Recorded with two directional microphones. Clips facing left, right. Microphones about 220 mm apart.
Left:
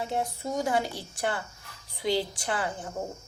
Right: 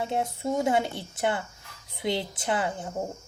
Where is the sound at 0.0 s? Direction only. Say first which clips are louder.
Right 2 dB; 25° right (ahead or behind).